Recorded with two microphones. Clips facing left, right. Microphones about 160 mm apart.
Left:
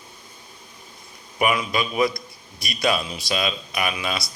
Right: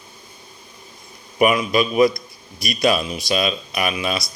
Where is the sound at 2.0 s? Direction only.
25° left (ahead or behind).